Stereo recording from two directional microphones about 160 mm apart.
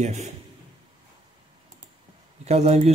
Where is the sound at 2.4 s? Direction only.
40° right (ahead or behind).